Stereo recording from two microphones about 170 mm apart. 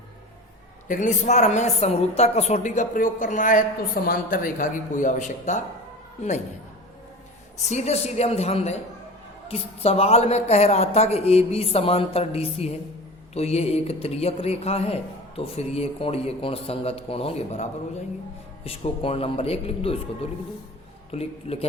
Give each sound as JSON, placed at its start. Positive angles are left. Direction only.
{"t": 0.9, "sound": "a woman's voice", "side_deg": 45}
{"t": 7.6, "sound": "speech", "side_deg": 45}
{"t": 21.1, "sound": "speech", "side_deg": 35}